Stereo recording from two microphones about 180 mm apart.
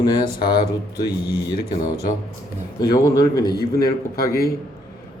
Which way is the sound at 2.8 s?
20° left (ahead or behind).